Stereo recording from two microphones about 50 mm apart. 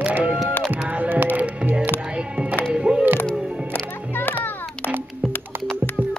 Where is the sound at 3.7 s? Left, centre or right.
Left.